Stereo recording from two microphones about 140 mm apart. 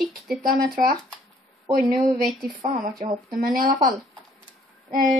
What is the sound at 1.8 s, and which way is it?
Speech, centre (ahead or behind).